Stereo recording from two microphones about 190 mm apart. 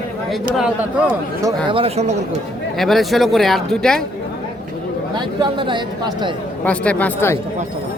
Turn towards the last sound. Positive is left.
turn(degrees=10)  # may be behind; listen again after turning